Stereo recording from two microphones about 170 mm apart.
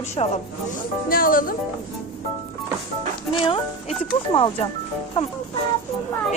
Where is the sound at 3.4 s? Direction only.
30° left (ahead or behind).